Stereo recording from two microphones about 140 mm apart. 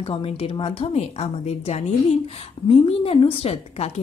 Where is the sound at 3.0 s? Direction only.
40° left (ahead or behind).